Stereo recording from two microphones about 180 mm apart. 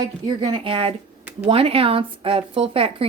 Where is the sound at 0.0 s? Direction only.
25° right (ahead or behind).